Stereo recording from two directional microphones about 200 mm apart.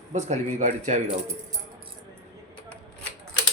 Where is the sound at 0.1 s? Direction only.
35° right (ahead or behind).